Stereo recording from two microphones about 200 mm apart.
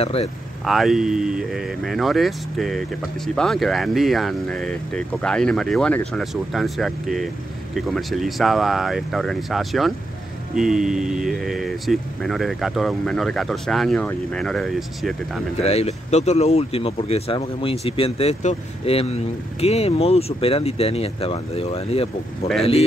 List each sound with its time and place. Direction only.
0.0 s speech: 30° left (ahead or behind)
0.7 s speech: centre (ahead or behind)
15.6 s speech: 30° left (ahead or behind)